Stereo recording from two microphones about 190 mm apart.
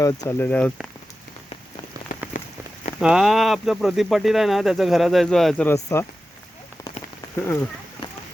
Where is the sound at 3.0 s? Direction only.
5° right (ahead or behind); by 6.0 s 15° left (ahead or behind).